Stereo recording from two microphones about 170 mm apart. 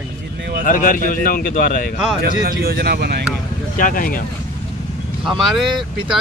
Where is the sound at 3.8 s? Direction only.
55° left (ahead or behind).